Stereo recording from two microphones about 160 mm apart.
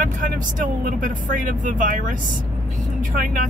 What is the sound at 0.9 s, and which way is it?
Speech, 55° right (ahead or behind).